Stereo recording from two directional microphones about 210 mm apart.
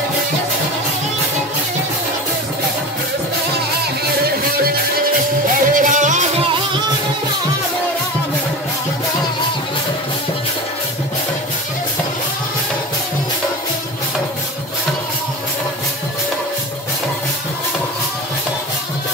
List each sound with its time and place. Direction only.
5.7 s music: 40° right (ahead or behind)